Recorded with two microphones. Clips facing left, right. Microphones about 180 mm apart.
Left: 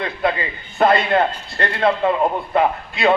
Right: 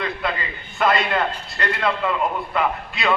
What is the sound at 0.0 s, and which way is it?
A man's voice, 50° left (ahead or behind).